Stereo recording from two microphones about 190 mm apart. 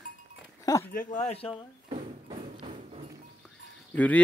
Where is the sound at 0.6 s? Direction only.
20° left (ahead or behind).